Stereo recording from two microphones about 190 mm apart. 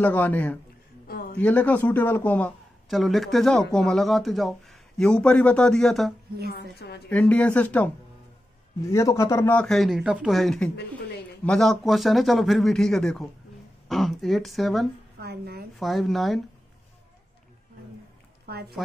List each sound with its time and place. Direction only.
0.0 s speech: 10° left (ahead or behind)
1.0 s a sound: 55° left (ahead or behind)
1.4 s a man's voice: 10° left (ahead or behind)
6.5 s a woman's voice: 55° left (ahead or behind)
7.1 s a man's voice: 5° left (ahead or behind)
15.1 s speech: 55° right (ahead or behind)
15.8 s a man's voice: centre (ahead or behind)
18.5 s speech: 55° right (ahead or behind)